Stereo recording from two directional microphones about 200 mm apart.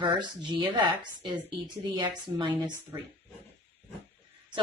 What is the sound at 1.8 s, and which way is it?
Speech, 20° right (ahead or behind).